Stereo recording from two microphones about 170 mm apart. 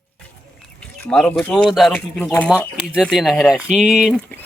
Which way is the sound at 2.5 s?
5° right (ahead or behind).